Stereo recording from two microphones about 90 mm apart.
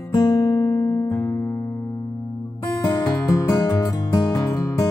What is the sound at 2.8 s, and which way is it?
Music, 50° left (ahead or behind).